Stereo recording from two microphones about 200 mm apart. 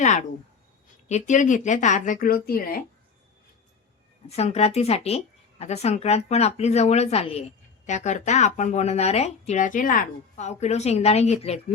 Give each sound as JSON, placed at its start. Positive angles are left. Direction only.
{"t": 0.0, "sound": "speech", "side_deg": 35}
{"t": 4.3, "sound": "speech", "side_deg": 30}